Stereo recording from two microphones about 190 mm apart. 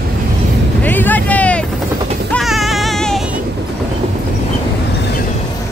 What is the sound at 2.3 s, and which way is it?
Music, centre (ahead or behind).